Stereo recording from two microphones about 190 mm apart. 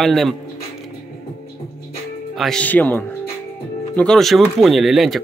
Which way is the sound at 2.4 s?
5° left (ahead or behind).